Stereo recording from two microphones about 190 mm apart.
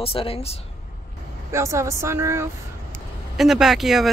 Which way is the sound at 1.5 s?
15° right (ahead or behind).